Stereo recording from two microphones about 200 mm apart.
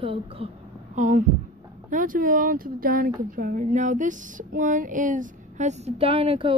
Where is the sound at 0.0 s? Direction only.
25° right (ahead or behind).